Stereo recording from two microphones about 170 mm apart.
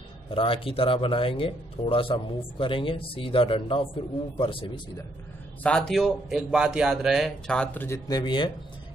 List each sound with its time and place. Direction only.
0.3 s speech: 30° left (ahead or behind)
5.6 s speech: 5° left (ahead or behind); by 8.5 s 25° left (ahead or behind)